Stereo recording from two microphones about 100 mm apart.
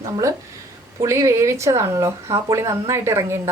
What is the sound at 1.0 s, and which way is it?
Speech, 30° right (ahead or behind).